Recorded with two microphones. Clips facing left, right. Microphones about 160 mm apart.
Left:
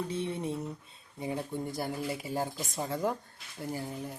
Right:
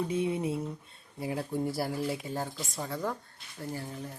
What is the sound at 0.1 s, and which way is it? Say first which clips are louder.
Speech: right 4 dB; 10° right (ahead or behind).